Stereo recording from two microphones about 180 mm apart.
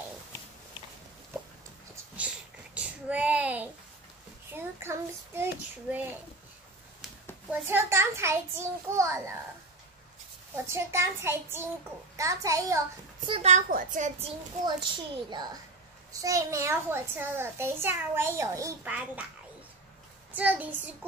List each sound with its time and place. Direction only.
2.1 s a sound: 5° right (ahead or behind)
4.5 s child singing: 15° right (ahead or behind)
7.4 s a child's voice: 15° right (ahead or behind)
10.5 s a child's voice: 15° right (ahead or behind)
13.3 s a child's voice: 40° right (ahead or behind)
14.6 s a child's voice: 25° right (ahead or behind)
20.3 s a child's voice: 10° right (ahead or behind)